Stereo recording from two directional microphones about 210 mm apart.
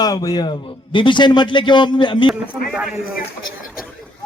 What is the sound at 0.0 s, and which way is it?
A man's voice, 15° left (ahead or behind).